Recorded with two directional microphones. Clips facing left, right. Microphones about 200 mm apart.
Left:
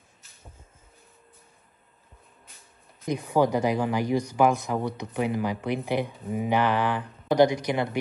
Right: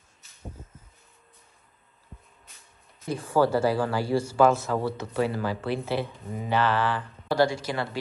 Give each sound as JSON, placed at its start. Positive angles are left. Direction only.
{"t": 3.1, "sound": "speech", "side_deg": 15}